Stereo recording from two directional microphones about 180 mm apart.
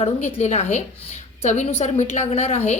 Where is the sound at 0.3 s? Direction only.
35° left (ahead or behind).